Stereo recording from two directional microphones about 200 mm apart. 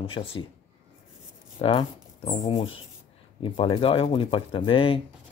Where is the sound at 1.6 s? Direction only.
25° left (ahead or behind).